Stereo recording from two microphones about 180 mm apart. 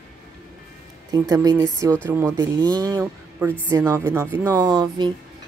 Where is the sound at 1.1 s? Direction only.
20° right (ahead or behind).